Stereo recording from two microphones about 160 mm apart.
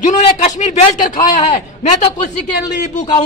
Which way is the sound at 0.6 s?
50° left (ahead or behind).